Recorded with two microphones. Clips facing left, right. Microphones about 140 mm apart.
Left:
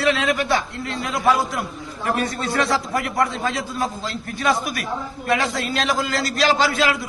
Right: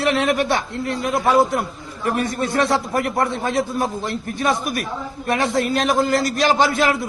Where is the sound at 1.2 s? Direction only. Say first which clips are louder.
Right 3 dB; 25° right (ahead or behind).